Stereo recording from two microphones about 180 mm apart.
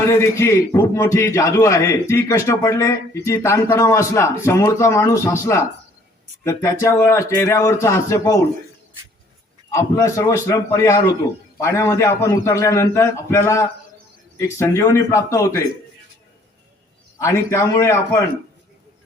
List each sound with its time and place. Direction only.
0.0 s a man's voice: 15° left (ahead or behind)
9.7 s a man's voice: 15° left (ahead or behind)
17.2 s a man's voice: 15° left (ahead or behind)